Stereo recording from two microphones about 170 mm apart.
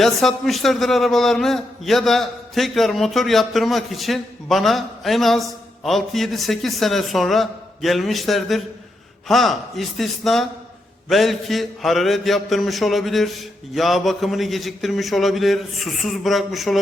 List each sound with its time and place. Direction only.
0.0 s a man's voice: centre (ahead or behind)